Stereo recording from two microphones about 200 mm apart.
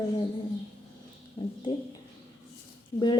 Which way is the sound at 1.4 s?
30° left (ahead or behind).